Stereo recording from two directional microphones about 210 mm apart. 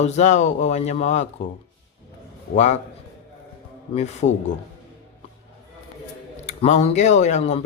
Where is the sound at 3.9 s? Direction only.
30° left (ahead or behind).